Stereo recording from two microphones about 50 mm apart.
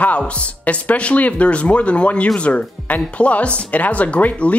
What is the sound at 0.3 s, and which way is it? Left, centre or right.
Speech, left.